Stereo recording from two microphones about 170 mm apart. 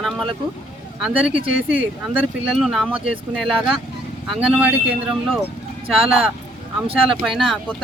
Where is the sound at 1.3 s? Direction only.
50° left (ahead or behind).